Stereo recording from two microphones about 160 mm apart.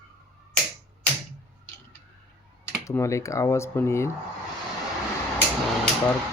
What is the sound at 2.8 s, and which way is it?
Speech, 20° left (ahead or behind).